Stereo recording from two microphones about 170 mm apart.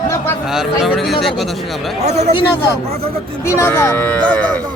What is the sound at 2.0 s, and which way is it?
Speech, 40° right (ahead or behind).